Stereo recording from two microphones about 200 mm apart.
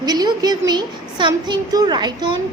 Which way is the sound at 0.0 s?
20° right (ahead or behind).